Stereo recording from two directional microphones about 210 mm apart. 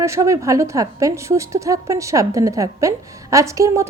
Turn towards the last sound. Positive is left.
turn(degrees=-15)  # may be behind; listen again after turning